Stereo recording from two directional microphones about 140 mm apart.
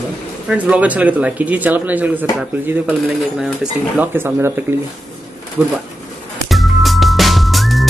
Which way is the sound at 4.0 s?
15° right (ahead or behind).